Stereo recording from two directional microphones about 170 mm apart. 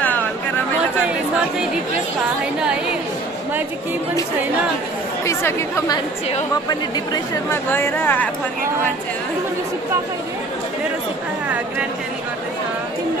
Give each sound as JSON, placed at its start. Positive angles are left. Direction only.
{"t": 5.2, "sound": "speech", "side_deg": 15}
{"t": 7.4, "sound": "speech", "side_deg": 15}